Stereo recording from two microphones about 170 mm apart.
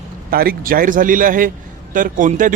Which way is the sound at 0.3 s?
60° right (ahead or behind).